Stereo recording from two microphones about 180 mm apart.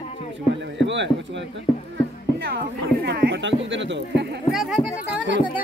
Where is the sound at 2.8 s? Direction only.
70° right (ahead or behind); by 4.2 s 85° right.